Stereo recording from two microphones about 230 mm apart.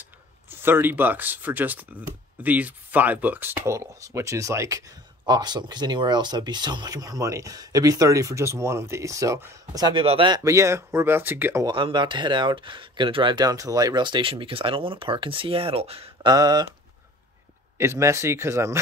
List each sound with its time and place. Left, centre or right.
0.0 s speech: centre
17.7 s speech: centre